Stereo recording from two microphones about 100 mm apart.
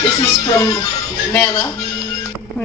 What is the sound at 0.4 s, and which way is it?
Speech, 35° left (ahead or behind).